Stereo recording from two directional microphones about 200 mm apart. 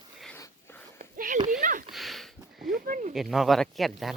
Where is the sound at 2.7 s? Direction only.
40° right (ahead or behind).